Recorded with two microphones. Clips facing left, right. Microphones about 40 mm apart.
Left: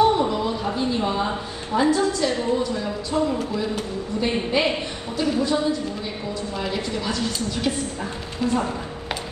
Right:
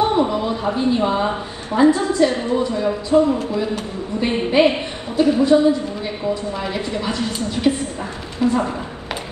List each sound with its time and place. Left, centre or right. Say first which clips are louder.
0.0 s a sound: right 1 dB; right
1.8 s a woman's voice: right 6 dB; right
4.5 s a woman's voice: right 6 dB; right
8.4 s a woman's voice: right 5 dB; right